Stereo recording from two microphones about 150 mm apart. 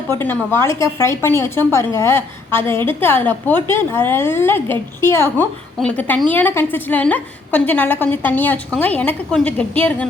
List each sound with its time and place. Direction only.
0.2 s a woman's voice: 15° left (ahead or behind)